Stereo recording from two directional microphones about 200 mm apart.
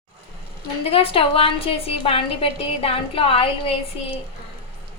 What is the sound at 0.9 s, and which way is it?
A woman's voice, 30° left (ahead or behind).